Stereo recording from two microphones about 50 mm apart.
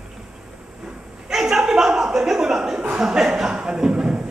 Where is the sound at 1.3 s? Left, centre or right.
Centre.